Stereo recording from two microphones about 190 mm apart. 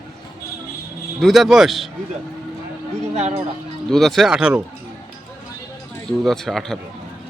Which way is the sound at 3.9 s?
Centre (ahead or behind).